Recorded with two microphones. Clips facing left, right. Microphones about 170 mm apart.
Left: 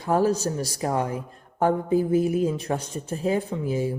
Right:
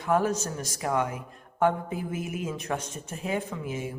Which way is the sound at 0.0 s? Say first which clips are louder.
Left 4 dB; 35° left (ahead or behind).